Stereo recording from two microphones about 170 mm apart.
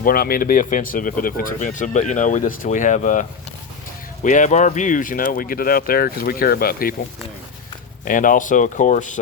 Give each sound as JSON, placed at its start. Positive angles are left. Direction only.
{"t": 0.0, "sound": "speech", "side_deg": 60}
{"t": 8.0, "sound": "speech", "side_deg": 50}